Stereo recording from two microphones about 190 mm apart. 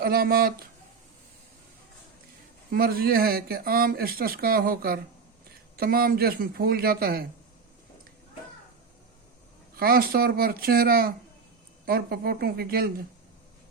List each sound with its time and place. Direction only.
0.0 s speech: 50° right (ahead or behind)
2.7 s speech: 50° right (ahead or behind)
9.7 s speech: 50° right (ahead or behind)